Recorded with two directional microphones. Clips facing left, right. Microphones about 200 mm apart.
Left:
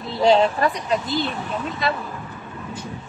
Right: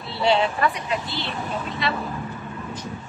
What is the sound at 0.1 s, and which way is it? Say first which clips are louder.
A woman's voice: left 4 dB; 40° left (ahead or behind).